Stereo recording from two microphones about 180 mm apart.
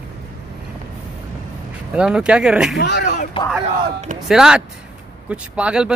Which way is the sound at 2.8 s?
70° left (ahead or behind).